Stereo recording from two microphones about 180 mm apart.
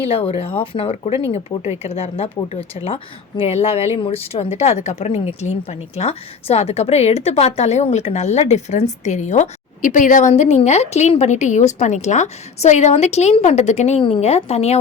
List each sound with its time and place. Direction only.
0.1 s a woman's voice: 30° left (ahead or behind)